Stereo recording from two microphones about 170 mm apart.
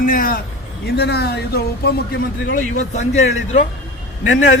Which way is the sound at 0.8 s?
70° left (ahead or behind).